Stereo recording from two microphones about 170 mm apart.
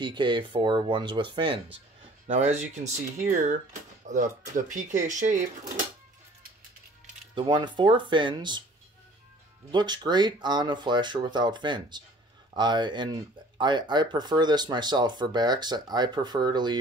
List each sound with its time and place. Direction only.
0.0 s speech: 25° right (ahead or behind)
2.2 s speech: 40° right (ahead or behind)
7.3 s speech: 25° right (ahead or behind)
9.7 s speech: 25° right (ahead or behind)